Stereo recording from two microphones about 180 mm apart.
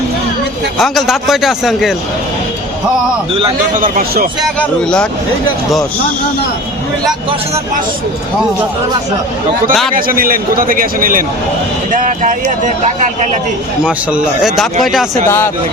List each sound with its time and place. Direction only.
0.8 s a man's voice: centre (ahead or behind)
3.8 s a man's voice: 50° right (ahead or behind)
4.4 s a man's voice: 5° left (ahead or behind)
9.9 s a man's voice: 50° right (ahead or behind)
13.8 s a man's voice: 5° right (ahead or behind)